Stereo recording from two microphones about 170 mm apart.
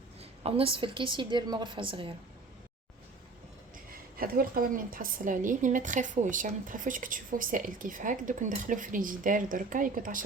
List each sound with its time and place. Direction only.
0.2 s a woman's voice: 35° right (ahead or behind)
4.2 s speech: 55° right (ahead or behind)